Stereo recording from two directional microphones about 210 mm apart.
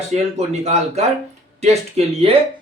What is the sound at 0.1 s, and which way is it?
Speech, 30° right (ahead or behind).